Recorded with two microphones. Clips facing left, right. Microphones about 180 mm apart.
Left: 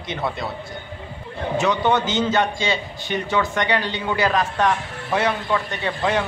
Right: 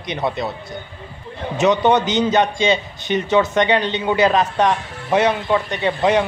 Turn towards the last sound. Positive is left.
turn(degrees=-20)  # may be behind; listen again after turning